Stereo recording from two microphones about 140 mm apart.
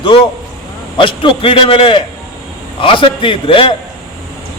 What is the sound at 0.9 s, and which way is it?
A man's voice, 35° left (ahead or behind).